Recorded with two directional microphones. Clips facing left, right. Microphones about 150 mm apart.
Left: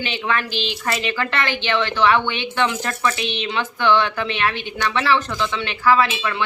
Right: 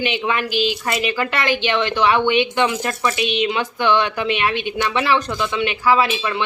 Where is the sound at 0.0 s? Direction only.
15° right (ahead or behind).